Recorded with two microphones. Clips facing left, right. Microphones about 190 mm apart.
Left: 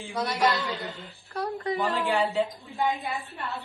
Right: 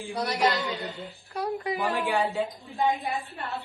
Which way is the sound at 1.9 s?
15° right (ahead or behind).